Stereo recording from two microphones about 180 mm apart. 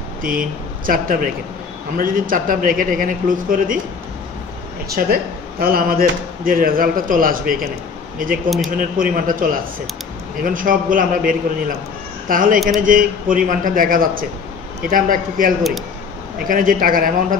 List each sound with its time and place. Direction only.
0.2 s speech: 50° right (ahead or behind)
4.9 s speech: 55° right (ahead or behind)